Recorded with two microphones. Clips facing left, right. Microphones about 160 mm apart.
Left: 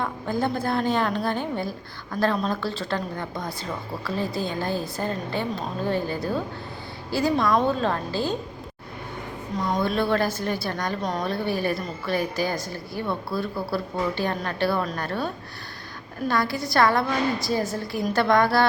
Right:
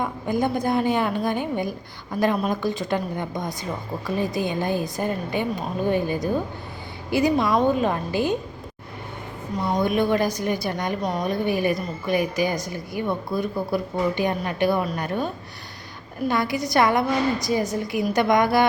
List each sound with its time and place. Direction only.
0.0 s a woman's voice: 15° right (ahead or behind)
7.3 s a woman's voice: 5° right (ahead or behind)
9.6 s a woman's voice: 10° right (ahead or behind)
16.3 s a woman's voice: 20° right (ahead or behind)